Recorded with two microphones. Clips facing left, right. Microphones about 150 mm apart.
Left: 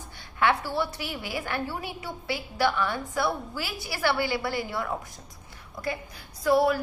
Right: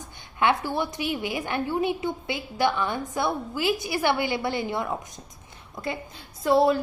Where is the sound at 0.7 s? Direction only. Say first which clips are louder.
Right 3 dB; 20° right (ahead or behind).